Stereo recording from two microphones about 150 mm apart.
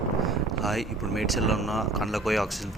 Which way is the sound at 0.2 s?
Centre (ahead or behind).